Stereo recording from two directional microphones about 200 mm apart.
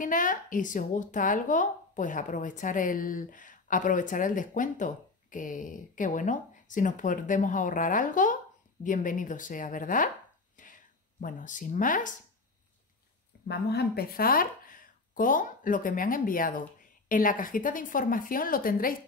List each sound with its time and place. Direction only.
0.0 s speech: 40° left (ahead or behind)
13.5 s a woman's voice: 55° left (ahead or behind)